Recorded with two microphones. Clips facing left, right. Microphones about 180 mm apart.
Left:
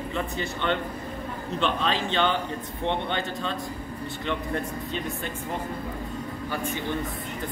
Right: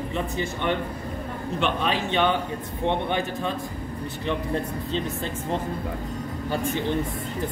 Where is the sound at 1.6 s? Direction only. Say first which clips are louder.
Right 1 dB; 10° right (ahead or behind).